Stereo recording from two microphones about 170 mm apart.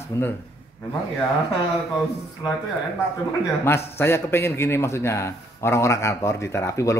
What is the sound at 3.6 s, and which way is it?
A man's voice, 15° left (ahead or behind).